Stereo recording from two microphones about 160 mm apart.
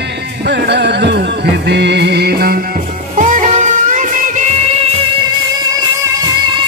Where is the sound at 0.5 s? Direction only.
90° right; by 2.6 s 75° right (ahead or behind).